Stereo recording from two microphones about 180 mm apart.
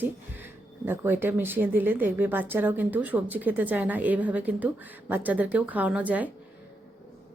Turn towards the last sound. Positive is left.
turn(degrees=-10)  # may be behind; listen again after turning